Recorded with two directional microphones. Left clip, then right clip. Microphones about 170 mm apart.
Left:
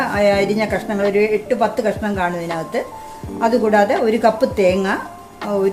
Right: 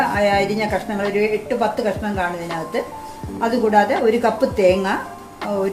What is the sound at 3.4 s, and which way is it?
A woman's voice, 45° left (ahead or behind).